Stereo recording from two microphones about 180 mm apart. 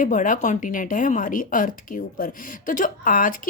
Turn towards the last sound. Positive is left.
turn(degrees=50)  # may be behind; listen again after turning